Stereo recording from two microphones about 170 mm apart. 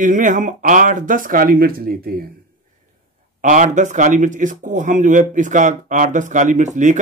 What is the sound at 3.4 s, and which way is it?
Speech, 45° right (ahead or behind).